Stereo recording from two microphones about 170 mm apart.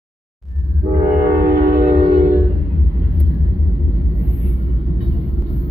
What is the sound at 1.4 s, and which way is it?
Train, 55° right (ahead or behind).